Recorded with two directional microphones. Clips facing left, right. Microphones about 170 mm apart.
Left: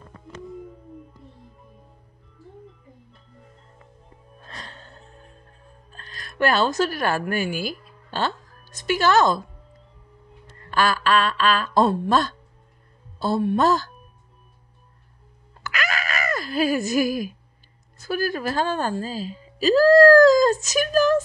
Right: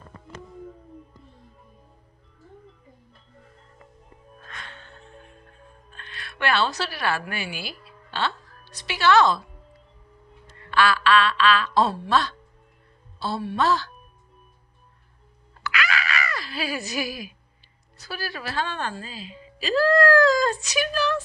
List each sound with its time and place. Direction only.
4.5 s music: 35° left (ahead or behind)
10.7 s a woman's voice: 45° left (ahead or behind)
15.6 s wail: 45° left (ahead or behind)
17.9 s a woman's voice: 50° left (ahead or behind)